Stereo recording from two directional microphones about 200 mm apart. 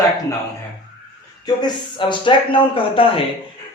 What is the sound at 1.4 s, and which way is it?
Speech, 20° left (ahead or behind).